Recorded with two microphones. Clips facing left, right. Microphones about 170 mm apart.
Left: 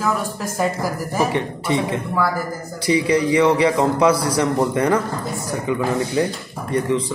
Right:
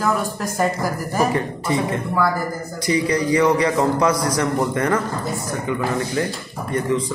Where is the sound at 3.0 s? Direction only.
10° left (ahead or behind).